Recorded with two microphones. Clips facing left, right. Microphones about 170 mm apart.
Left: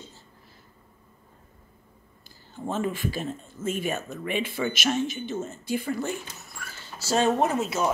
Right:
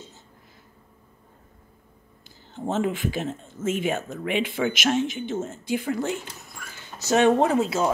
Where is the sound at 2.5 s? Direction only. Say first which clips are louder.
Right 3 dB; 20° right (ahead or behind).